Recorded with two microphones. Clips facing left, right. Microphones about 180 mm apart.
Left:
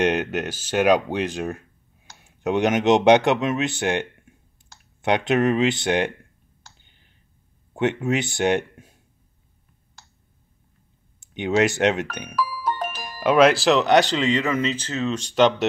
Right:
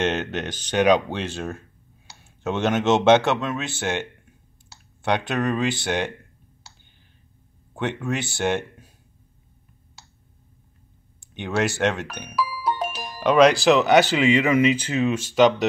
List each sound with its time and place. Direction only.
0.0 s speech: 10° left (ahead or behind)
7.7 s speech: 20° left (ahead or behind)
11.1 s speech: 20° left (ahead or behind)
12.4 s music: 10° right (ahead or behind)
13.2 s speech: 5° left (ahead or behind)